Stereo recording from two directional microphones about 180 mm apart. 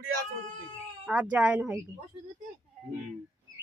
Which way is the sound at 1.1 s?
10° right (ahead or behind).